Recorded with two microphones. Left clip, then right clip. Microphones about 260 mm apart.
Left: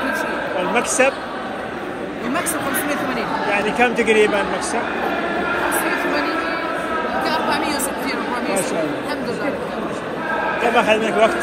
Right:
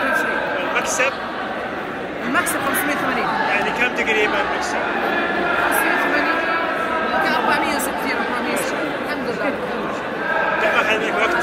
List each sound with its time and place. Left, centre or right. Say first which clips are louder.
3.5 s speech: left 2 dB; centre
7.2 s chatter: right 1 dB; centre
10.8 s speech: left 3 dB; centre